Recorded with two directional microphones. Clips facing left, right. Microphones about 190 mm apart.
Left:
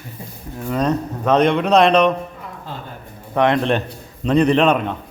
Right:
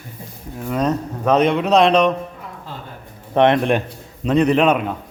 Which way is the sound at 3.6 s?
10° right (ahead or behind).